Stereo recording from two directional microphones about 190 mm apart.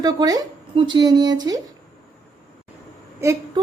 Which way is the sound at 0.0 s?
20° right (ahead or behind).